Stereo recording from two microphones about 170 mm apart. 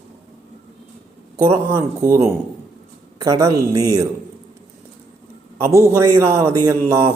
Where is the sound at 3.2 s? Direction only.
20° right (ahead or behind).